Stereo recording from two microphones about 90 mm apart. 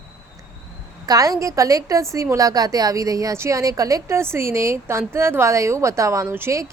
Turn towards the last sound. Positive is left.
turn(degrees=-30)  # may be behind; listen again after turning